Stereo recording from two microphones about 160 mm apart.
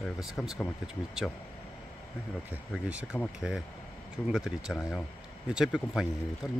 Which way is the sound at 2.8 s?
10° right (ahead or behind).